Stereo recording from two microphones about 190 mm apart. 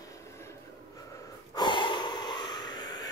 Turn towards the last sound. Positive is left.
turn(degrees=20)  # may be behind; listen again after turning